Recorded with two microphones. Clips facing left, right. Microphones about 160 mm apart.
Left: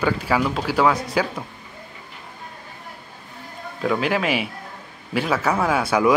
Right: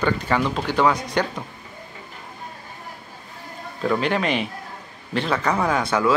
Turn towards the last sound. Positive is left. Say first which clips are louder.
# left 2 dB
turn(degrees=10)  # may be behind; listen again after turning